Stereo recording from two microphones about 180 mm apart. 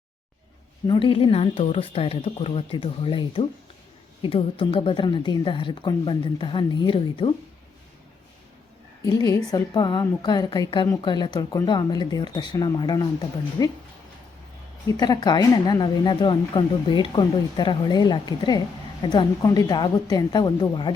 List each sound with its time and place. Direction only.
0.9 s a woman's voice: 30° left (ahead or behind)
9.0 s speech: 20° left (ahead or behind)
14.8 s speech: 20° left (ahead or behind)